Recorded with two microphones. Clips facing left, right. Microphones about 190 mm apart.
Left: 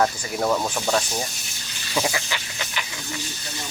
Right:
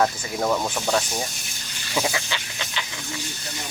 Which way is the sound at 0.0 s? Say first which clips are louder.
Even; centre (ahead or behind).